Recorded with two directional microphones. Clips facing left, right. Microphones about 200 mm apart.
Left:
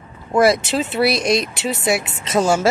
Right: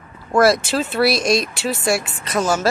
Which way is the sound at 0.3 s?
20° left (ahead or behind).